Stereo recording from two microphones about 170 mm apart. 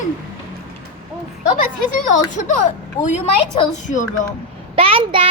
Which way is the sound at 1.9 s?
50° left (ahead or behind).